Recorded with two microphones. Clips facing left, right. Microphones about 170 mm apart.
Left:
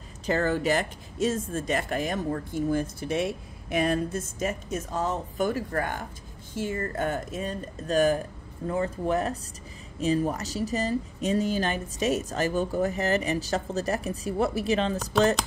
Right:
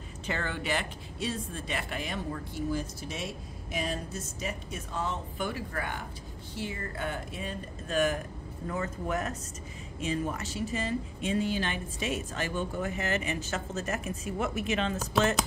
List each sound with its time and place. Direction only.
0.3 s speech: 40° left (ahead or behind)